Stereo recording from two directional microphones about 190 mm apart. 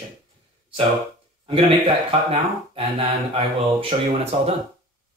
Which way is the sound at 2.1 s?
30° right (ahead or behind).